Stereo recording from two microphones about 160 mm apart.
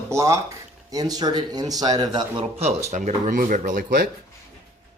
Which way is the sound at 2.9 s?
45° right (ahead or behind).